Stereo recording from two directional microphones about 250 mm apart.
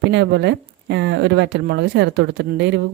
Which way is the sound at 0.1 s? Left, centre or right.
Right.